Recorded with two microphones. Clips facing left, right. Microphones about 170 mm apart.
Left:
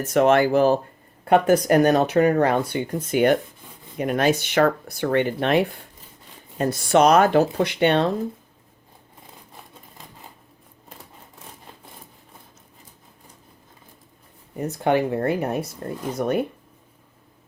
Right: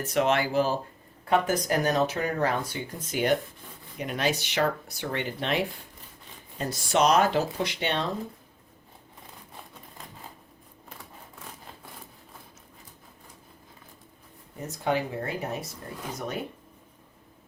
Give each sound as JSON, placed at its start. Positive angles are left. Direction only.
{"t": 0.0, "sound": "speech", "side_deg": 50}
{"t": 14.6, "sound": "speech", "side_deg": 60}